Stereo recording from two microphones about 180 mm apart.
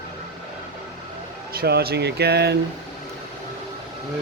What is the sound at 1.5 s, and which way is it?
Speech, 60° right (ahead or behind).